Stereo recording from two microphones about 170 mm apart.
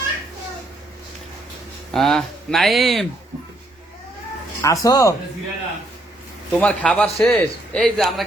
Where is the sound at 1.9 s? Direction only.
Centre (ahead or behind).